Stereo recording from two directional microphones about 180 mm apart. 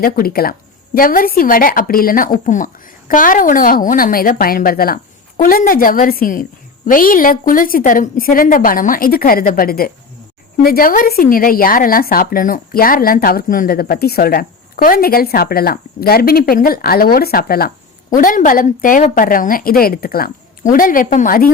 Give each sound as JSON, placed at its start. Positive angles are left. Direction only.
{"t": 0.0, "sound": "a woman's voice", "side_deg": 55}